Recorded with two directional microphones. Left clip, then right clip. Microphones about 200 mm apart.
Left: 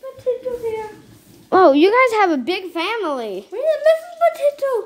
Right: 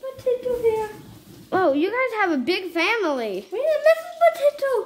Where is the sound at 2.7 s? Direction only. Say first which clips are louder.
Right 2 dB; centre (ahead or behind).